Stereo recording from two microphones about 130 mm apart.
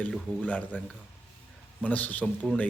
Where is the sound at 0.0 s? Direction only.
10° left (ahead or behind).